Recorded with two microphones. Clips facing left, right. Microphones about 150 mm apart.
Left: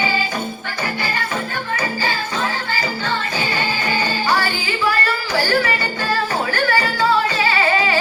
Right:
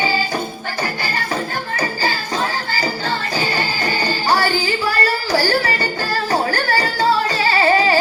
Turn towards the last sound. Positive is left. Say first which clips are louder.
# right 3 dB
turn(degrees=-40)  # may be behind; listen again after turning